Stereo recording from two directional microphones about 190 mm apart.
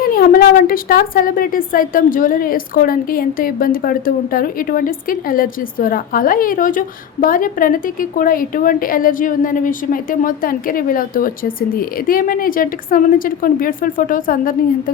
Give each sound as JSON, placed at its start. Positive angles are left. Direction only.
{"t": 0.0, "sound": "a woman's voice", "side_deg": 50}